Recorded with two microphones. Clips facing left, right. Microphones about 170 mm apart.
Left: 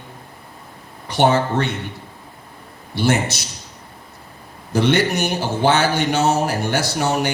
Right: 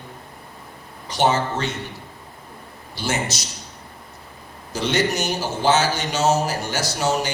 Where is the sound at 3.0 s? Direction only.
60° left (ahead or behind).